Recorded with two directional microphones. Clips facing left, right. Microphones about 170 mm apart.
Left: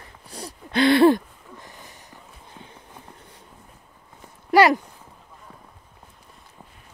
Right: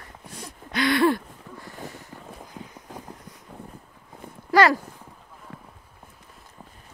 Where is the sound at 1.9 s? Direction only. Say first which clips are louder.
Right 6 dB; 15° left (ahead or behind).